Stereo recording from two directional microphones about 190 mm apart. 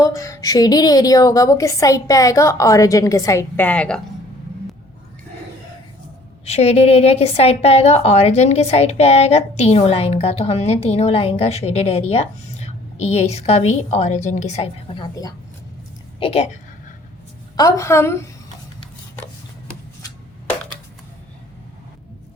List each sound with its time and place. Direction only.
0.0 s a woman's voice: 15° left (ahead or behind)
6.4 s a woman's voice: 35° left (ahead or behind)
16.2 s a woman's voice: 30° left (ahead or behind)
17.6 s a woman's voice: 15° left (ahead or behind)